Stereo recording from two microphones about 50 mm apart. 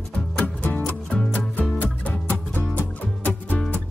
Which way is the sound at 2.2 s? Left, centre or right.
Left.